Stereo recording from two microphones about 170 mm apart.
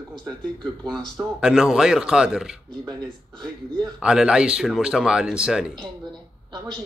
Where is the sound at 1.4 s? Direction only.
5° right (ahead or behind).